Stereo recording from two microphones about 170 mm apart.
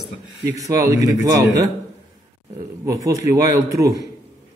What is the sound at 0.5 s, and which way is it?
A man's voice, 20° right (ahead or behind).